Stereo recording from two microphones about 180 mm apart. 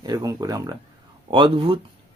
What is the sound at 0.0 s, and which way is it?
Speech, 20° right (ahead or behind).